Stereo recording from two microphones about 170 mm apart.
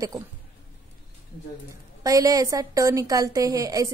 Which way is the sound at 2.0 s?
20° right (ahead or behind).